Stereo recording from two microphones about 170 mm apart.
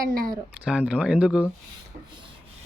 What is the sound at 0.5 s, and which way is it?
Speech, 5° right (ahead or behind).